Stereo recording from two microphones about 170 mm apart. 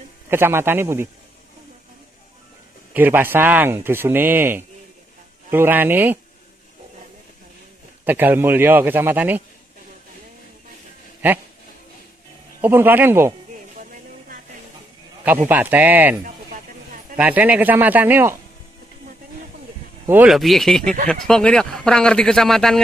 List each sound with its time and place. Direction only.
0.3 s speech: 15° right (ahead or behind)
2.9 s speech: 10° right (ahead or behind)
8.0 s speech: 10° right (ahead or behind)
12.6 s speech: 10° right (ahead or behind)
15.4 s speech: 10° right (ahead or behind)
16.3 s a sound: 50° right (ahead or behind)
17.2 s speech: 10° right (ahead or behind)
20.1 s speech: 5° right (ahead or behind)